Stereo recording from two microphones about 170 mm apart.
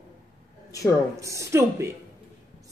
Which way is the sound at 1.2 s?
15° right (ahead or behind).